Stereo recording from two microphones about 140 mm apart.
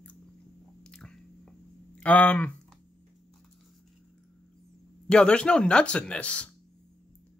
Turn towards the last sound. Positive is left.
turn(degrees=10)  # may be behind; listen again after turning